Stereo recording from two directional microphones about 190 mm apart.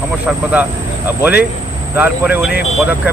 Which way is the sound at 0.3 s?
10° right (ahead or behind).